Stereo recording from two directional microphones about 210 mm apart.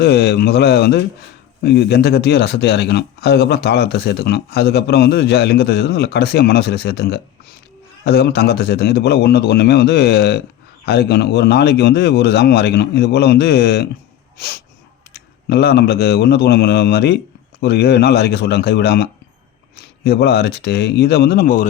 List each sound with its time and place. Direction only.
0.0 s speech: 50° left (ahead or behind)
14.3 s a sound: 50° left (ahead or behind)
15.1 s speech: 50° left (ahead or behind)